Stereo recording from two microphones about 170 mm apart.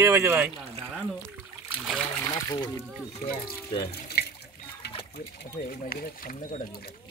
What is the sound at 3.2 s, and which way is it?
Speech, 65° left (ahead or behind).